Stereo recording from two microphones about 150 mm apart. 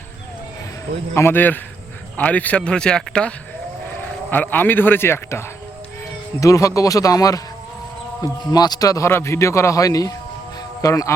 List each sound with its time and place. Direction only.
1.1 s a man's voice: 15° left (ahead or behind)